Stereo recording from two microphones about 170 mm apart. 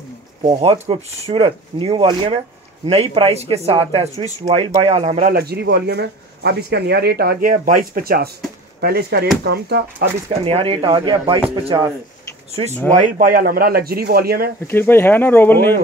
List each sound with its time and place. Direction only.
0.4 s speech: 35° right (ahead or behind)
4.5 s speech: 25° right (ahead or behind)
4.8 s speech: 40° right (ahead or behind)
5.3 s speech: 70° right (ahead or behind)
10.4 s speech: 35° right (ahead or behind)
13.2 s speech: 60° right (ahead or behind)
14.7 s speech: 10° left (ahead or behind)